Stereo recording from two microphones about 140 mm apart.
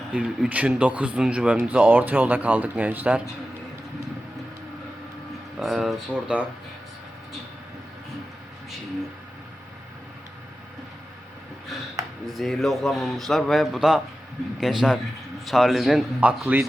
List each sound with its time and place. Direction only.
0.1 s speech: 10° right (ahead or behind)
5.5 s a man's voice: centre (ahead or behind)
12.2 s a man's voice: centre (ahead or behind)